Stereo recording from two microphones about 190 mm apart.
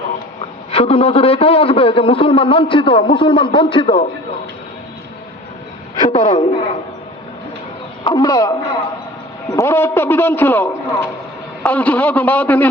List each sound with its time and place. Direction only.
0.7 s a man's voice: 30° left (ahead or behind)
6.0 s a sound: 20° left (ahead or behind)
8.0 s a man's voice: 20° left (ahead or behind)